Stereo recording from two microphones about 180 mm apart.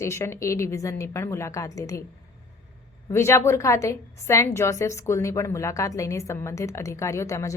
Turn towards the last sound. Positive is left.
turn(degrees=15)  # may be behind; listen again after turning